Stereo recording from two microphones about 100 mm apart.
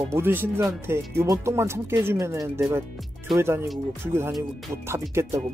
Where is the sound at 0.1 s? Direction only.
20° right (ahead or behind).